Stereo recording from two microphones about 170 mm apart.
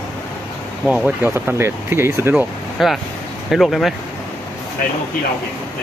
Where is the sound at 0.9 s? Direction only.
10° right (ahead or behind).